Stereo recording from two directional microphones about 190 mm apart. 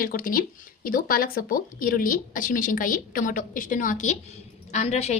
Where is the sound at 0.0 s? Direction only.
50° left (ahead or behind).